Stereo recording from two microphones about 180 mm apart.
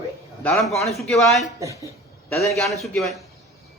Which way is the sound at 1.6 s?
15° right (ahead or behind).